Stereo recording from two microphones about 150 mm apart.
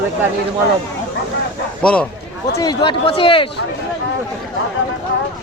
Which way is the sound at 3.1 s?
35° left (ahead or behind).